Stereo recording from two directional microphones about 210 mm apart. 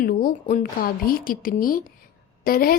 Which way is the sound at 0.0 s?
45° left (ahead or behind).